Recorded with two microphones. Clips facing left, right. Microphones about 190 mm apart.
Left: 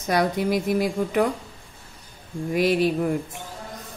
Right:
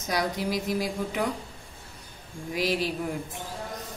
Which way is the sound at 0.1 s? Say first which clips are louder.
Left 6 dB; 55° left (ahead or behind).